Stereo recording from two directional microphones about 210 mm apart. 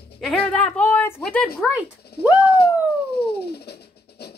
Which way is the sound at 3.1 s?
50° left (ahead or behind).